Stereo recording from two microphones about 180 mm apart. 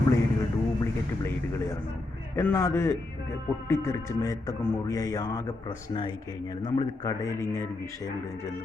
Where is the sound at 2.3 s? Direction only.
15° left (ahead or behind).